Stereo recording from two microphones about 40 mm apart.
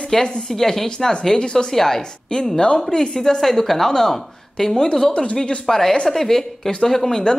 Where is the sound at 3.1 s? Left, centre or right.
Centre.